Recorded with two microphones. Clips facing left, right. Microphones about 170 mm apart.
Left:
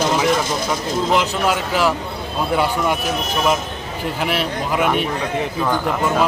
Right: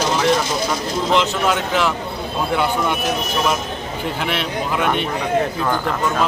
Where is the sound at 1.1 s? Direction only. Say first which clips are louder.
Right 2 dB; 5° left (ahead or behind).